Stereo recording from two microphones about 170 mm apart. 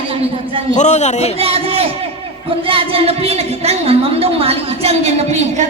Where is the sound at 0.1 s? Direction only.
30° right (ahead or behind).